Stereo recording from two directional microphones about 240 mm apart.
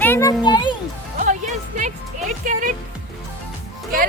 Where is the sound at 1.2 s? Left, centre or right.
Right.